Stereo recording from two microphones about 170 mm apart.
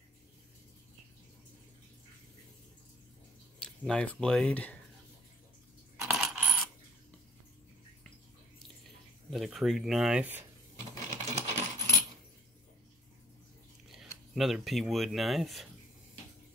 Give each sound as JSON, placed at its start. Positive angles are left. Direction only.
{"t": 3.5, "sound": "speech", "side_deg": 5}
{"t": 5.9, "sound": "coin", "side_deg": -5}
{"t": 9.3, "sound": "speech", "side_deg": 0}
{"t": 11.3, "sound": "coin", "side_deg": -40}
{"t": 14.3, "sound": "speech", "side_deg": 0}